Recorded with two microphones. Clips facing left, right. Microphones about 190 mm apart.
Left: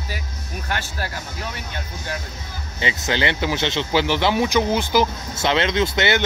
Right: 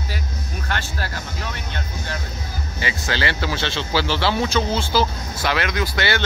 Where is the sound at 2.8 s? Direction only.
20° left (ahead or behind).